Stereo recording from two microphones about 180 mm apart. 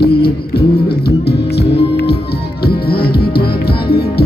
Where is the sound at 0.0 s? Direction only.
60° left (ahead or behind).